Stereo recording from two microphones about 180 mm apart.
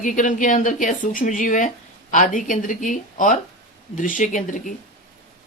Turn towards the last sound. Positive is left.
turn(degrees=45)  # may be behind; listen again after turning